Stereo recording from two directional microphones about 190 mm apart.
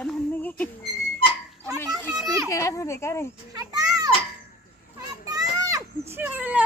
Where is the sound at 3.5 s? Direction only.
20° right (ahead or behind).